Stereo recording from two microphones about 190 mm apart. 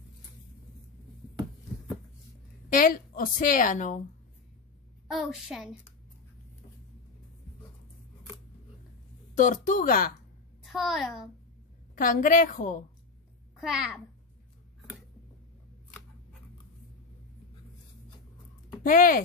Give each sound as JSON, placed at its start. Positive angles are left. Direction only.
{"t": 2.7, "sound": "a woman's voice", "side_deg": 45}
{"t": 5.0, "sound": "a woman's voice", "side_deg": 0}
{"t": 9.4, "sound": "a woman's voice", "side_deg": 40}
{"t": 10.6, "sound": "a child's voice", "side_deg": 0}
{"t": 11.9, "sound": "a woman's voice", "side_deg": 45}
{"t": 13.6, "sound": "a woman's voice", "side_deg": 0}
{"t": 18.8, "sound": "speech", "side_deg": 45}